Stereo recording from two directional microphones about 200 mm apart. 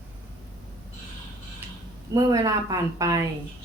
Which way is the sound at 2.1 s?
15° right (ahead or behind).